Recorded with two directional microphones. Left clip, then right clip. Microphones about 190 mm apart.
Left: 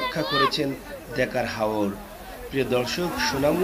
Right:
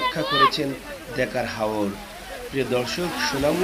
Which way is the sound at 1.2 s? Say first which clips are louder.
Even; centre (ahead or behind).